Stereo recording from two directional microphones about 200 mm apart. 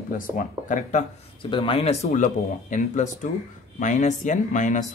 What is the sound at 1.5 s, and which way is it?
Speech, 25° left (ahead or behind).